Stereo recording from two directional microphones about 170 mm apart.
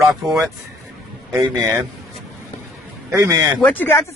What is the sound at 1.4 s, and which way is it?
Speech, 20° right (ahead or behind).